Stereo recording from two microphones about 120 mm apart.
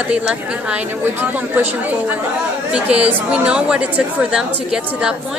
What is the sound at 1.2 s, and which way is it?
A woman's voice, 20° right (ahead or behind).